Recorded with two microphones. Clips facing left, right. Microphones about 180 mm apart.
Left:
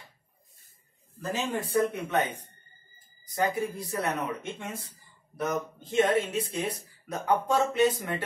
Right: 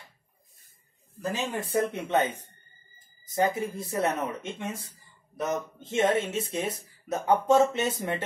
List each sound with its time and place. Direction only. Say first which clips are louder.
1.3 s speech: left 1 dB; 20° right (ahead or behind)